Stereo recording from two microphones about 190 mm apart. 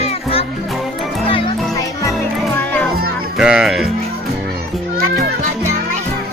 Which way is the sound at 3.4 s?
5° right (ahead or behind).